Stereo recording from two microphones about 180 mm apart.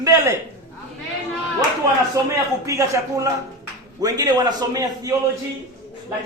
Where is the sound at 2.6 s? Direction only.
15° right (ahead or behind).